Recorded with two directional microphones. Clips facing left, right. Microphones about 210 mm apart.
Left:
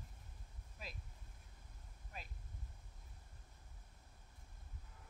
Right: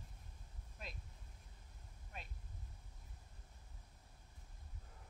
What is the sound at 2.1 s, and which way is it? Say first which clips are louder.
Vehicle: even; centre (ahead or behind).